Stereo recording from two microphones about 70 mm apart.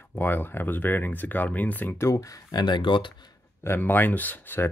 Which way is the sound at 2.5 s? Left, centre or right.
Left.